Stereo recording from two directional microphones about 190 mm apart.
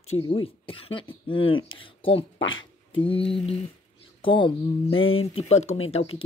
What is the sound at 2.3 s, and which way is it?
Speech, 90° left.